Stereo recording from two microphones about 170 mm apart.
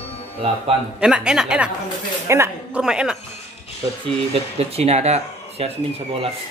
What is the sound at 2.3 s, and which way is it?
Speech, 15° right (ahead or behind).